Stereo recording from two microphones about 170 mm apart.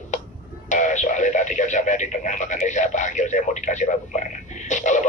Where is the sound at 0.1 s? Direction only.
45° left (ahead or behind).